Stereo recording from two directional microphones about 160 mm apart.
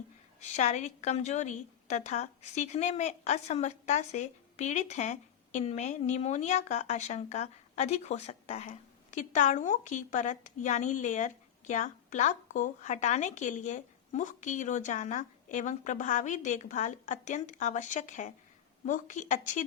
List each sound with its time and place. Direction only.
0.3 s a woman's voice: 45° left (ahead or behind)